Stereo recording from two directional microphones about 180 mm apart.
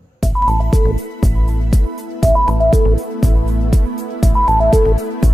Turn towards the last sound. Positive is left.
turn(degrees=0)  # may be behind; listen again after turning